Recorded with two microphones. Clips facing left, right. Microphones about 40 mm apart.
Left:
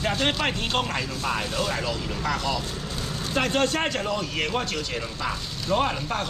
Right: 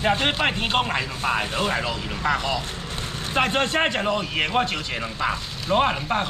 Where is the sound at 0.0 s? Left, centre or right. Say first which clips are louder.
Right 3 dB; right.